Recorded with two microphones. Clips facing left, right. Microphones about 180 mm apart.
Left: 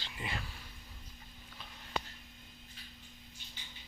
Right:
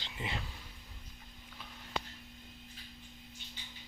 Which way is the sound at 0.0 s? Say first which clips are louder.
Right 1 dB; 20° right (ahead or behind).